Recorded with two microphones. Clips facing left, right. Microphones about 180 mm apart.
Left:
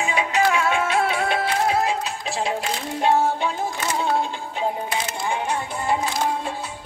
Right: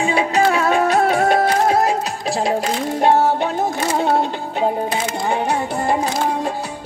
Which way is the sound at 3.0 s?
60° right (ahead or behind).